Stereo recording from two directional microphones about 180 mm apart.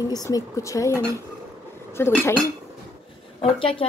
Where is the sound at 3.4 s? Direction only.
30° left (ahead or behind).